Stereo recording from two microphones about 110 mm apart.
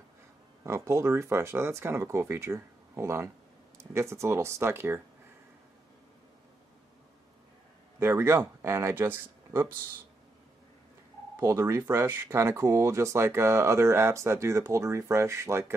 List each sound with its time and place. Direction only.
0.7 s speech: 25° right (ahead or behind)
8.0 s speech: 20° right (ahead or behind)
11.3 s speech: 20° right (ahead or behind)